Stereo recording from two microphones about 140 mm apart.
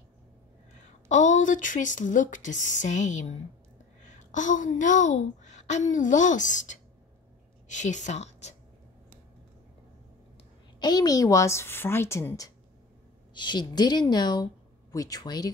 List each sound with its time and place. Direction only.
0.8 s a woman's voice: 60° left (ahead or behind)
10.8 s a woman's voice: 30° left (ahead or behind)
13.3 s a woman's voice: 30° left (ahead or behind)